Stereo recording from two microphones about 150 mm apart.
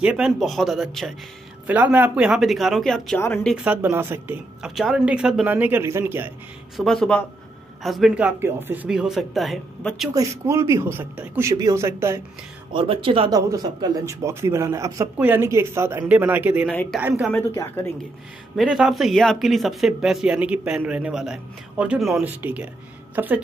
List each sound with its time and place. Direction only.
0.0 s speech: 5° right (ahead or behind)
1.7 s speech: 10° right (ahead or behind)
3.5 s speech: 10° right (ahead or behind)
4.6 s speech: 5° right (ahead or behind)
6.8 s speech: centre (ahead or behind)
10.1 s a man's voice: 20° right (ahead or behind)
12.7 s speech: 35° right (ahead or behind)
13.3 s a man's voice: 20° right (ahead or behind)
18.6 s speech: centre (ahead or behind)